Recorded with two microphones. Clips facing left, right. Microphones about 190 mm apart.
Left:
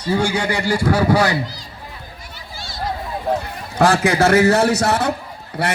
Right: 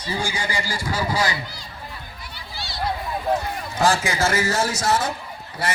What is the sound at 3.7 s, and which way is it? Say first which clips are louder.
Speech: left 6 dB; 65° left (ahead or behind).